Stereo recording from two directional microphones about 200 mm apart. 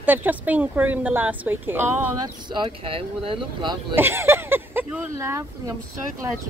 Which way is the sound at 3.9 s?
10° right (ahead or behind).